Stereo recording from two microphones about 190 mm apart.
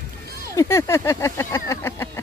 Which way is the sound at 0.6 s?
15° left (ahead or behind).